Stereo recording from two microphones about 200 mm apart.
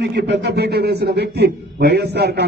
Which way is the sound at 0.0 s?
55° right (ahead or behind).